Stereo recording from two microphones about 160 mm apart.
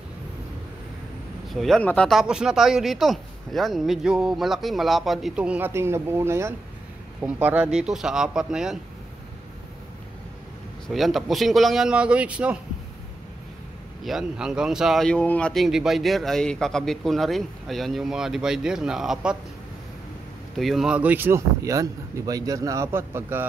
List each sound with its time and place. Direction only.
1.5 s speech: centre (ahead or behind)
10.9 s speech: centre (ahead or behind)
14.0 s speech: 5° right (ahead or behind)
20.5 s speech: centre (ahead or behind)